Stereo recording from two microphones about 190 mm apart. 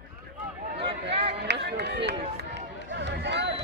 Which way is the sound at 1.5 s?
65° right (ahead or behind).